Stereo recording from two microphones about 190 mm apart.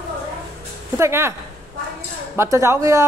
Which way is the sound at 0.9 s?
15° right (ahead or behind).